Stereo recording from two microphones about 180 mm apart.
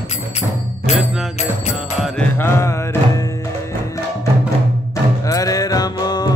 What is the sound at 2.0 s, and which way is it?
Music, 5° left (ahead or behind).